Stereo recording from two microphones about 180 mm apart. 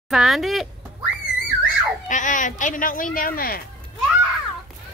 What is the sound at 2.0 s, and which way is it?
Speech, 45° left (ahead or behind).